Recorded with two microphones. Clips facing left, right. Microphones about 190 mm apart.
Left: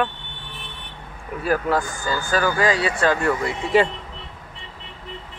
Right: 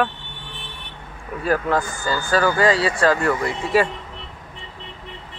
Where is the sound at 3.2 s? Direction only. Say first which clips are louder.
Right 1 dB; 20° left (ahead or behind).